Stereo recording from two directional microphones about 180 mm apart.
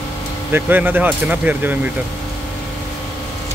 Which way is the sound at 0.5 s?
10° right (ahead or behind).